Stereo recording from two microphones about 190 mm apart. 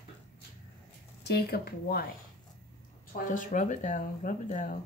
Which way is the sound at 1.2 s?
55° left (ahead or behind).